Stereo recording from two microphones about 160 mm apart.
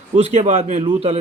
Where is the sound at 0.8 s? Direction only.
40° right (ahead or behind).